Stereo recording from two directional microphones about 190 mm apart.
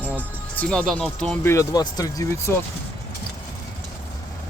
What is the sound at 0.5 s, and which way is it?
Speech, 5° left (ahead or behind).